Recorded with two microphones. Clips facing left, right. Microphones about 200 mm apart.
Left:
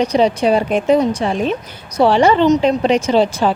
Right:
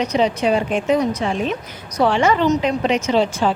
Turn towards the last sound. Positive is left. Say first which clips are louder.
# left 3 dB
turn(degrees=35)  # may be behind; listen again after turning